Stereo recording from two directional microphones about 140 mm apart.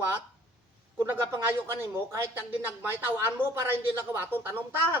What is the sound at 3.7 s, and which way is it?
Speech, 15° right (ahead or behind).